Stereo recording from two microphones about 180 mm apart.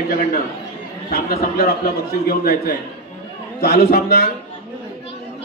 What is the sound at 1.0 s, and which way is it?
A man's voice, 60° left (ahead or behind).